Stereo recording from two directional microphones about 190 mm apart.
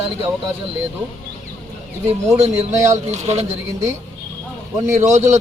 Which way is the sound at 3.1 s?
35° right (ahead or behind).